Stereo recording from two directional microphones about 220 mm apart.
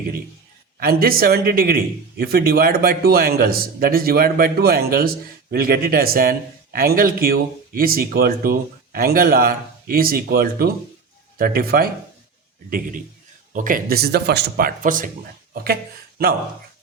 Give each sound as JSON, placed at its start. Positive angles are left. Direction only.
{"t": 0.8, "sound": "a man's voice", "side_deg": -45}
{"t": 13.5, "sound": "speech", "side_deg": -35}